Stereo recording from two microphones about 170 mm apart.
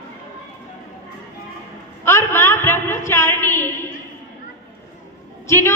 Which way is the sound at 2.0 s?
15° left (ahead or behind).